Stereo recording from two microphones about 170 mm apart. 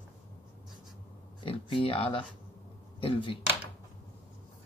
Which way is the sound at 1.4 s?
30° left (ahead or behind).